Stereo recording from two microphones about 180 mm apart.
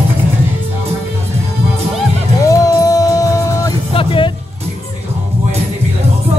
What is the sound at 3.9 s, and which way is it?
Music, 30° left (ahead or behind).